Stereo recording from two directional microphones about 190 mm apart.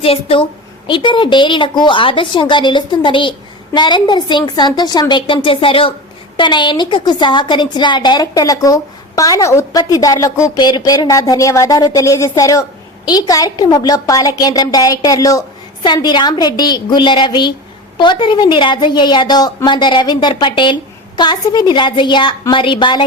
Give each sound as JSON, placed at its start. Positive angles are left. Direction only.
{"t": 0.0, "sound": "a woman's voice", "side_deg": 30}